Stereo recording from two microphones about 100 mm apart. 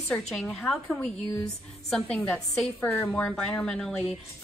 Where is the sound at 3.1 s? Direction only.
10° left (ahead or behind).